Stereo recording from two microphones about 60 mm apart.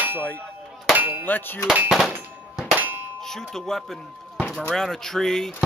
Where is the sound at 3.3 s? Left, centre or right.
Centre.